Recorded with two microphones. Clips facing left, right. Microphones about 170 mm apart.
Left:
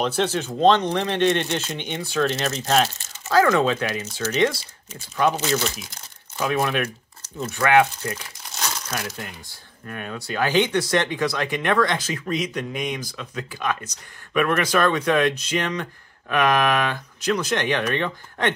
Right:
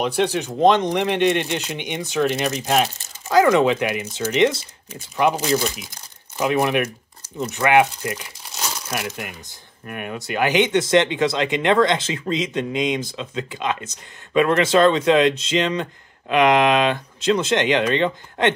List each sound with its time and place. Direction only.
0.0 s speech: 15° right (ahead or behind)
8.5 s crumpling: 5° right (ahead or behind)
8.9 s speech: 15° right (ahead or behind)